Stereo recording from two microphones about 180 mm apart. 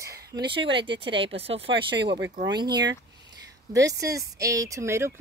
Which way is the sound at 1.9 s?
75° right (ahead or behind).